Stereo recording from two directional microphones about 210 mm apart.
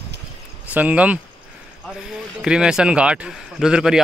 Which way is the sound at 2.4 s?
5° right (ahead or behind).